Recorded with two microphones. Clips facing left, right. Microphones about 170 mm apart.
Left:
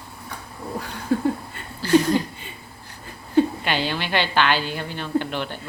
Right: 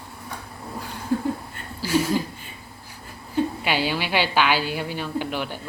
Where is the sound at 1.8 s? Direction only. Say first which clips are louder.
Left 4 dB; 5° right (ahead or behind).